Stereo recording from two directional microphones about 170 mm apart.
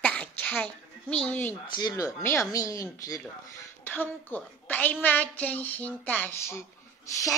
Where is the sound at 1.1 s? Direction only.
10° left (ahead or behind).